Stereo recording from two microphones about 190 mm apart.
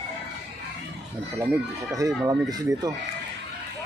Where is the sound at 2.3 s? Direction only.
20° right (ahead or behind).